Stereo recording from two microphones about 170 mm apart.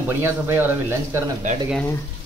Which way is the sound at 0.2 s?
15° right (ahead or behind).